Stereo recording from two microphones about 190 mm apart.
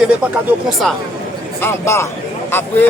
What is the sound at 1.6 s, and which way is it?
Speech, 15° left (ahead or behind).